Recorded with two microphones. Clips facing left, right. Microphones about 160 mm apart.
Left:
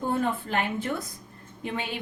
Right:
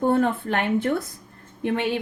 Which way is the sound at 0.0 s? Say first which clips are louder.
Right 6 dB; 60° right (ahead or behind).